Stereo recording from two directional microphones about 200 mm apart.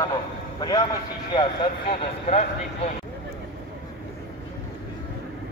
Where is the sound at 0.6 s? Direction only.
20° left (ahead or behind).